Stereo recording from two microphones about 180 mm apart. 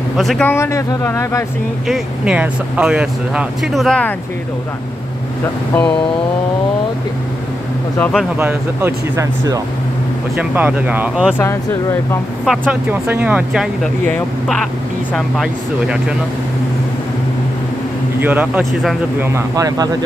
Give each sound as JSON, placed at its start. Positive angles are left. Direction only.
{"t": 0.2, "sound": "speech", "side_deg": 0}
{"t": 0.5, "sound": "speech", "side_deg": 15}
{"t": 1.9, "sound": "speech", "side_deg": -5}
{"t": 8.0, "sound": "speech", "side_deg": 0}
{"t": 8.4, "sound": "speech", "side_deg": -10}
{"t": 10.3, "sound": "speech", "side_deg": -10}
{"t": 11.3, "sound": "speech", "side_deg": 15}
{"t": 12.4, "sound": "speech", "side_deg": -10}
{"t": 14.0, "sound": "speech", "side_deg": 10}
{"t": 18.2, "sound": "speech", "side_deg": -10}
{"t": 19.2, "sound": "speech", "side_deg": -15}